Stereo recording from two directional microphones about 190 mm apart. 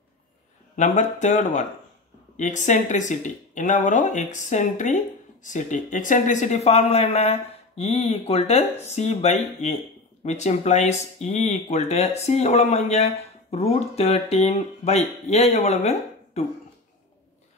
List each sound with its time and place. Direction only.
0.7 s speech: 40° left (ahead or behind)